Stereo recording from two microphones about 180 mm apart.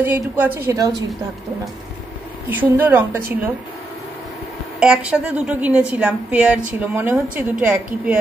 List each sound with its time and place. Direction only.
0.0 s a woman's voice: 10° right (ahead or behind)
2.5 s a woman's voice: 10° right (ahead or behind)
4.7 s a woman's voice: 5° right (ahead or behind)